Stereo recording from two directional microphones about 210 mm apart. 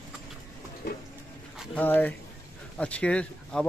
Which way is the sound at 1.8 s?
10° left (ahead or behind).